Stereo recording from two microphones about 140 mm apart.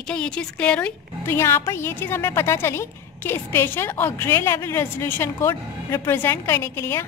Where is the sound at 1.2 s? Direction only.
20° left (ahead or behind).